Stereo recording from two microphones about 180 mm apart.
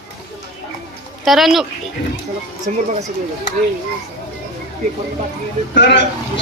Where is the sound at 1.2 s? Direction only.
Centre (ahead or behind).